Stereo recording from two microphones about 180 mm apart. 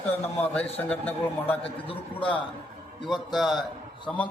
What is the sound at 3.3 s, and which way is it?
Speech, centre (ahead or behind).